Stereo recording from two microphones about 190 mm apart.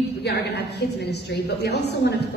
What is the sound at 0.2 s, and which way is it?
A woman's voice, 60° left (ahead or behind).